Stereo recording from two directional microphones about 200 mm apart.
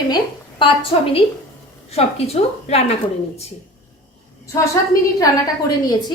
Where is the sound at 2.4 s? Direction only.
35° left (ahead or behind).